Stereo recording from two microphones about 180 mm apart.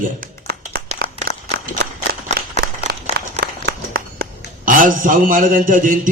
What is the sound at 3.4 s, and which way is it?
A man's voice, 55° right (ahead or behind).